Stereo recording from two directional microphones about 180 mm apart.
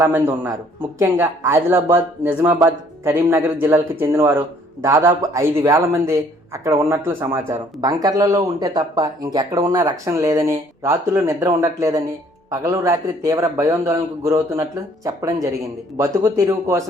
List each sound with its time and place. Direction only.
0.0 s speech: 10° right (ahead or behind)